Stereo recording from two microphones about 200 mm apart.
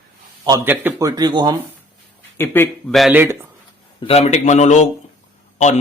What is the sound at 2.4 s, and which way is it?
Speech, 10° left (ahead or behind).